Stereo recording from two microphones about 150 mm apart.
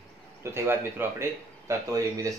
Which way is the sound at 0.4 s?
15° right (ahead or behind).